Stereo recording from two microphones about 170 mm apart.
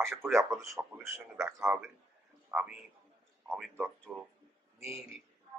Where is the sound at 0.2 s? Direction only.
15° right (ahead or behind).